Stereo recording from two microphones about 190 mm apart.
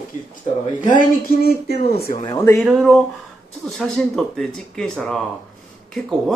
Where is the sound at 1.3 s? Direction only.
50° left (ahead or behind).